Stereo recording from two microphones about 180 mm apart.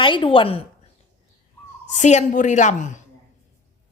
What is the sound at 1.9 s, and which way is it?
Speech, 40° left (ahead or behind).